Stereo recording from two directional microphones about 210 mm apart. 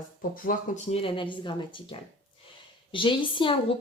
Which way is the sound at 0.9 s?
25° left (ahead or behind).